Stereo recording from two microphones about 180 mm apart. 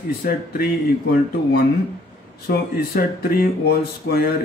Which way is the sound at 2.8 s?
55° left (ahead or behind).